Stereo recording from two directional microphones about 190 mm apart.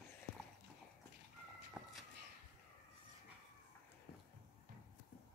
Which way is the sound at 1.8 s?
Centre (ahead or behind).